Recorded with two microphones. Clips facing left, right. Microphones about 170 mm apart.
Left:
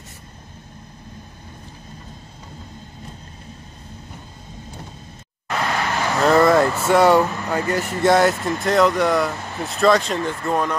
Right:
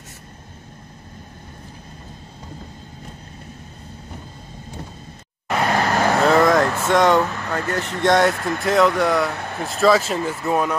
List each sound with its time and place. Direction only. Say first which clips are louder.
5.8 s vehicle: right 4 dB; 40° right (ahead or behind)
6.2 s speech: left 3 dB; centre (ahead or behind)